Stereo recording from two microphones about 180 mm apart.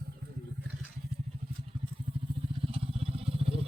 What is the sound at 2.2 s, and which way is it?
Vehicle, 30° right (ahead or behind).